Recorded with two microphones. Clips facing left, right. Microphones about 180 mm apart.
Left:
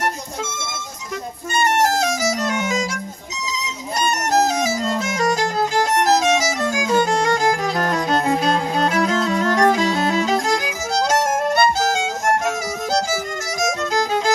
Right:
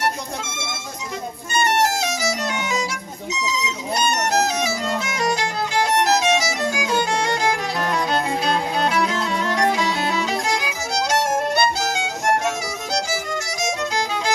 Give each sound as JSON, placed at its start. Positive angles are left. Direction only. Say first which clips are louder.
{"t": 1.5, "sound": "music", "louder": "left 2 dB", "side_deg": 50}
{"t": 4.1, "sound": "music", "louder": "left 5 dB", "side_deg": 45}